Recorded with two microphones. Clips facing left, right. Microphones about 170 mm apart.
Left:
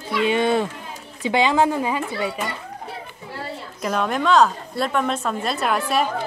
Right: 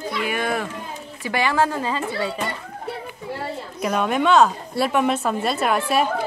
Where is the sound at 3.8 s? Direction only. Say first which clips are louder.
Right 2 dB; 5° right (ahead or behind).